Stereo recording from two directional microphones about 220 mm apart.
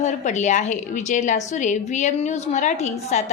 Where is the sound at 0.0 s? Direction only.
30° left (ahead or behind).